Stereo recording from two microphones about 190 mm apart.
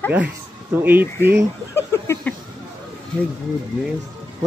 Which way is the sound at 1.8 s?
15° left (ahead or behind).